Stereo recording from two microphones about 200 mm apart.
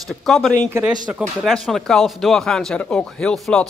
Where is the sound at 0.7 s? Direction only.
10° right (ahead or behind).